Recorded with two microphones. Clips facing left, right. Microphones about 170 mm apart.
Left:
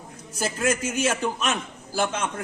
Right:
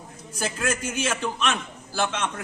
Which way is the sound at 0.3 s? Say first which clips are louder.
Left 3 dB; 10° left (ahead or behind).